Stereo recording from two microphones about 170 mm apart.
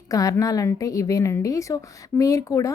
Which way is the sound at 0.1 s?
20° left (ahead or behind).